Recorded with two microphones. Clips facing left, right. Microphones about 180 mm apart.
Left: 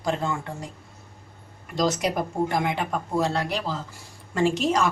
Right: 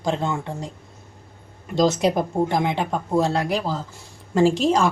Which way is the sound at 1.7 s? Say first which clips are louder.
Right 5 dB; 25° right (ahead or behind).